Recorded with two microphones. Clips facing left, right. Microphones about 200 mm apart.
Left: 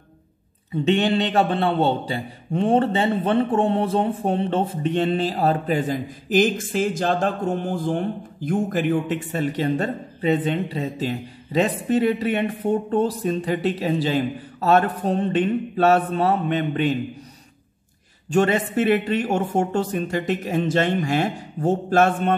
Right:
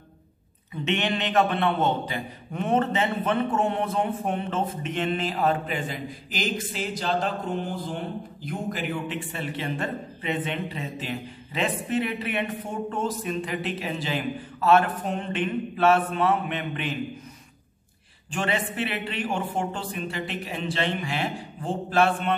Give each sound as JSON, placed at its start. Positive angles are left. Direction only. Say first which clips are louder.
{"t": 0.8, "sound": "a man's voice", "louder": "left 7 dB", "side_deg": 35}
{"t": 18.3, "sound": "speech", "louder": "left 9 dB", "side_deg": 45}